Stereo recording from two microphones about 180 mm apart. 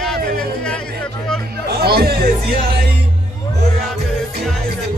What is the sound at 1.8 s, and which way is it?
Music, 60° right (ahead or behind).